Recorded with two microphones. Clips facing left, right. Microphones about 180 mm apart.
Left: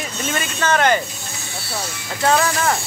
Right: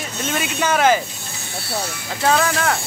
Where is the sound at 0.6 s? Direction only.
5° right (ahead or behind).